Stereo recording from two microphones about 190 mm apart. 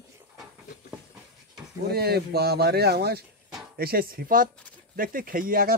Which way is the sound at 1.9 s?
55° right (ahead or behind).